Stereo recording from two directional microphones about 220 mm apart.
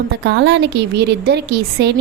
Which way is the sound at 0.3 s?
50° right (ahead or behind).